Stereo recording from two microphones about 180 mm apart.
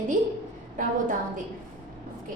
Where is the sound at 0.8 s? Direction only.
45° right (ahead or behind).